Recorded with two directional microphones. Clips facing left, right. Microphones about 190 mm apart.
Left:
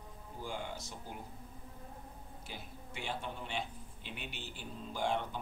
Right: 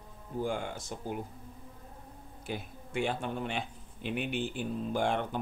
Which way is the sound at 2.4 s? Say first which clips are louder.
Right 11 dB; 55° right (ahead or behind).